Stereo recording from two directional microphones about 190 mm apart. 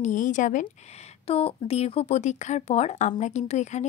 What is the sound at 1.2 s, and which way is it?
Speech, 30° left (ahead or behind).